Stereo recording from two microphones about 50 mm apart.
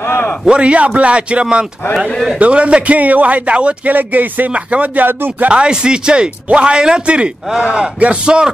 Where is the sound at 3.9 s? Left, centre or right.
Right.